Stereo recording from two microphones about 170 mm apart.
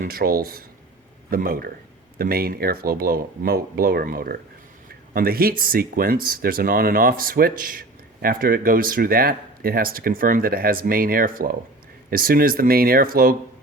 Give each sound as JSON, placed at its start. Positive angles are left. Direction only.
{"t": 0.0, "sound": "speech", "side_deg": -60}